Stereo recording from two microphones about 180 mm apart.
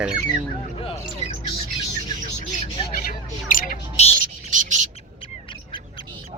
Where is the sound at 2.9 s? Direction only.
50° left (ahead or behind).